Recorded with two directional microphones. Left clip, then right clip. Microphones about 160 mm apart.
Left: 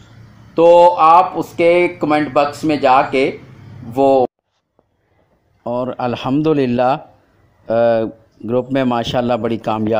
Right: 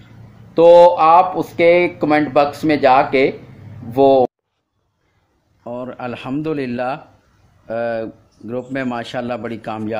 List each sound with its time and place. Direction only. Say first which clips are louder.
0.6 s speech: even; 5° right (ahead or behind)
5.9 s a man's voice: left 7 dB; 45° left (ahead or behind)